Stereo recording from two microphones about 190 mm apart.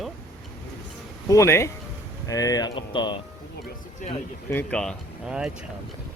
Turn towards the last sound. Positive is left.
turn(degrees=-5)  # may be behind; listen again after turning